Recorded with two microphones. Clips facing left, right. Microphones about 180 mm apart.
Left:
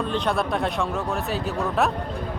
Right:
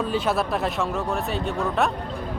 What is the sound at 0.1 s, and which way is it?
Speech, 5° right (ahead or behind).